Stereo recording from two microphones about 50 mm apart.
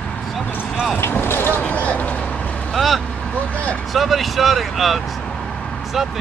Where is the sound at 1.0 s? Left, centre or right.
Left.